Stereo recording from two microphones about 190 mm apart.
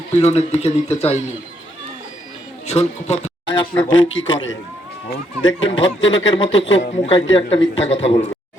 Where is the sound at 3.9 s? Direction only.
90° left.